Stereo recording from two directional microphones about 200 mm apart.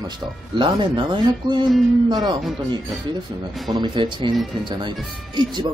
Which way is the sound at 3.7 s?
25° right (ahead or behind).